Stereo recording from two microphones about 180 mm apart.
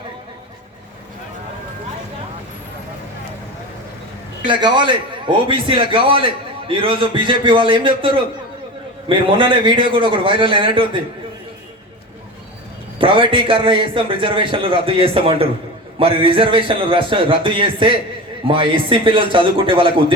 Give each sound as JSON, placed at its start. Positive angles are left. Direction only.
{"t": 4.4, "sound": "a man's voice", "side_deg": -25}
{"t": 13.0, "sound": "a man's voice", "side_deg": -30}